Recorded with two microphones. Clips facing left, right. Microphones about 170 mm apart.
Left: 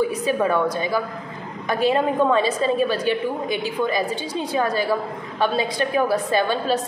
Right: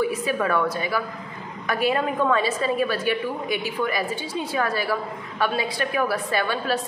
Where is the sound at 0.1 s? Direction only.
20° left (ahead or behind).